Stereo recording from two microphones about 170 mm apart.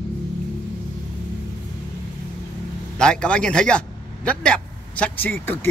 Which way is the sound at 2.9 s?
5° left (ahead or behind).